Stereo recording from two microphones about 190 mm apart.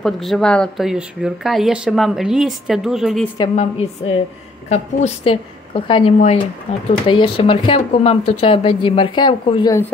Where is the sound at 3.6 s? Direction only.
35° left (ahead or behind).